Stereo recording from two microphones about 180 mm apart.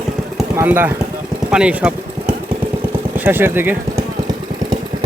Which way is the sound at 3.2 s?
10° right (ahead or behind).